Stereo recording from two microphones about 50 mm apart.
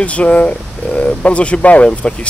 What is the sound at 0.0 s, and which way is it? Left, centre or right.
Speech, left.